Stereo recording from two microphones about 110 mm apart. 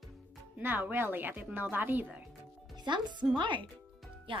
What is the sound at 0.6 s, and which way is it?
A woman's voice, 20° right (ahead or behind).